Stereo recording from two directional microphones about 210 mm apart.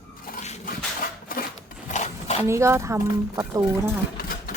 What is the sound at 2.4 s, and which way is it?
Speech, 15° right (ahead or behind).